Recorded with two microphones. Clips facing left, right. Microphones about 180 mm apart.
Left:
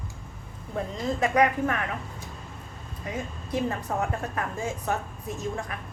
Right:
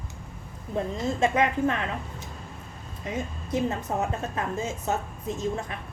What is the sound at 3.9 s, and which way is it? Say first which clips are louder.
A woman's voice: even; 20° right (ahead or behind).